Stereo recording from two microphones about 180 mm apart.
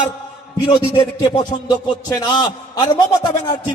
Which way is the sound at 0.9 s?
25° left (ahead or behind).